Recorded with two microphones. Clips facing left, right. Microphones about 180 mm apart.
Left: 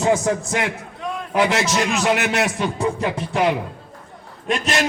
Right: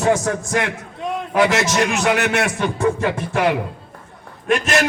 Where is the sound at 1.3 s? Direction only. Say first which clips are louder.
Right 2 dB; 15° left (ahead or behind).